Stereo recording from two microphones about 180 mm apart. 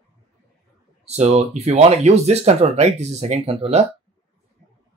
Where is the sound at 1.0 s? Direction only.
40° right (ahead or behind).